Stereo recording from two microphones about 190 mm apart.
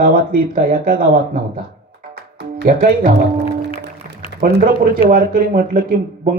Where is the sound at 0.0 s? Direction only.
50° right (ahead or behind).